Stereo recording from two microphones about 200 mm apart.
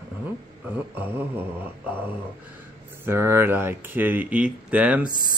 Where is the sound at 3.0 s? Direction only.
10° right (ahead or behind).